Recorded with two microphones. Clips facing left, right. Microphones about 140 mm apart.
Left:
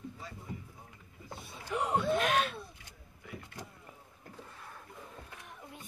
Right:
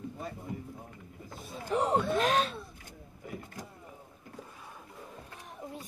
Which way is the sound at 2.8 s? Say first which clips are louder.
Right 7 dB; 45° right (ahead or behind).